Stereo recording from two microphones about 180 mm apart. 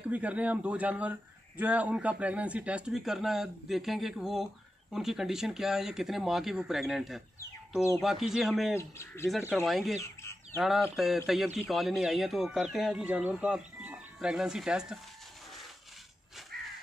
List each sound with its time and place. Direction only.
0.1 s a man's voice: 10° right (ahead or behind)
8.7 s speech: 15° left (ahead or behind)
9.5 s a man's voice: centre (ahead or behind)
16.5 s crow: 60° right (ahead or behind)